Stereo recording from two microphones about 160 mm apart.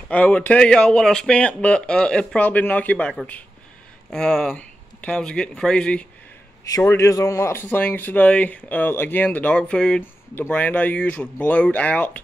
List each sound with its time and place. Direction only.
0.1 s speech: 10° left (ahead or behind)
6.8 s speech: 15° left (ahead or behind)